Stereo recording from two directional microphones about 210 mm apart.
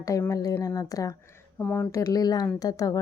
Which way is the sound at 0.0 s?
15° left (ahead or behind).